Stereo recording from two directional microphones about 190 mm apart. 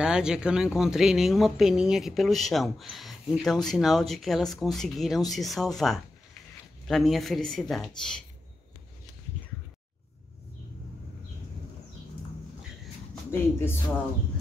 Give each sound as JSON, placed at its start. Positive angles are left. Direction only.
{"t": 0.0, "sound": "speech", "side_deg": -5}
{"t": 13.1, "sound": "speech", "side_deg": 10}